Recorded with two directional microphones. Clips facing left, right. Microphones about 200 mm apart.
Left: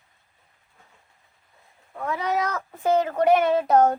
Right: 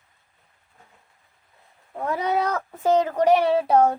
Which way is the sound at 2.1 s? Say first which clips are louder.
Right 2 dB; 30° right (ahead or behind).